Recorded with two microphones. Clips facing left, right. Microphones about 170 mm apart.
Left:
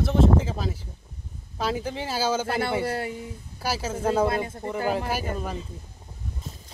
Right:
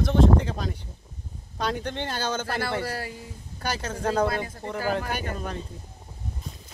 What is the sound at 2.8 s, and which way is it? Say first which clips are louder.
Speech: left 4 dB; 25° left (ahead or behind).